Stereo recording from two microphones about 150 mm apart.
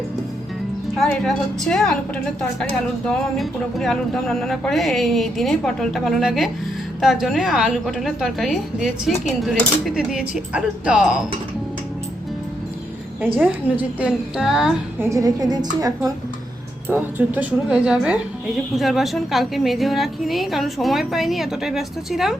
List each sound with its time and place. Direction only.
0.9 s speech: 5° left (ahead or behind)
13.2 s a woman's voice: 10° right (ahead or behind)
14.9 s a woman's voice: 20° right (ahead or behind)
16.9 s speech: 10° right (ahead or behind)